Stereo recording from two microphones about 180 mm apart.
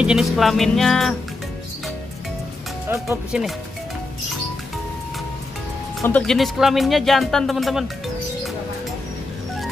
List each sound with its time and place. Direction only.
0.0 s speech: 5° right (ahead or behind)
2.9 s speech: 10° right (ahead or behind)
6.0 s speech: 5° left (ahead or behind)